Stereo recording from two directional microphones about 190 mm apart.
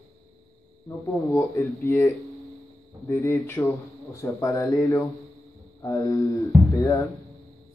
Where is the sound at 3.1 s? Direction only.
15° left (ahead or behind).